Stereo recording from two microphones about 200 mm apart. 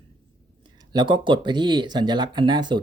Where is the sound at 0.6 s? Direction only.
20° right (ahead or behind).